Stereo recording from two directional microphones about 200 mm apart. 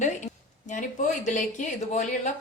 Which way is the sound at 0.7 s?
40° left (ahead or behind).